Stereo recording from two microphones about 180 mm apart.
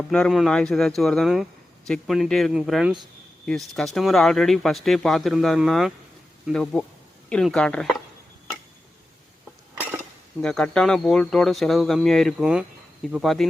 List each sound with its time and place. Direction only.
0.1 s speech: centre (ahead or behind)
9.7 s cutlery: 10° right (ahead or behind)
10.4 s speech: 5° left (ahead or behind)